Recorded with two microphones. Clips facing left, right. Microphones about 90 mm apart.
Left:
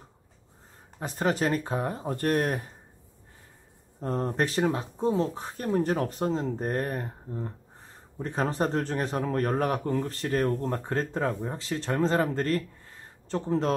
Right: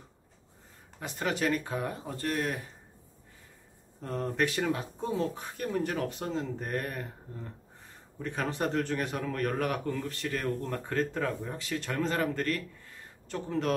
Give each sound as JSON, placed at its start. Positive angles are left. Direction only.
{"t": 0.9, "sound": "speech", "side_deg": 35}
{"t": 2.1, "sound": "speech", "side_deg": 50}
{"t": 4.0, "sound": "speech", "side_deg": 35}